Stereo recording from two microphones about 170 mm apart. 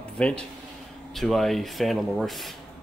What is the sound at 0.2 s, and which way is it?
Speech, 5° left (ahead or behind).